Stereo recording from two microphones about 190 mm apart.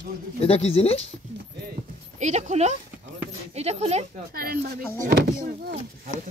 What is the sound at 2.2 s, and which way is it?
A woman's voice, 35° right (ahead or behind).